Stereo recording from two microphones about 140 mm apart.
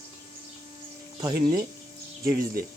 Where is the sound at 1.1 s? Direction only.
25° right (ahead or behind).